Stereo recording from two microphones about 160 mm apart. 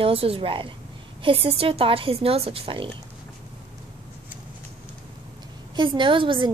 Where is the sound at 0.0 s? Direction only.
35° right (ahead or behind).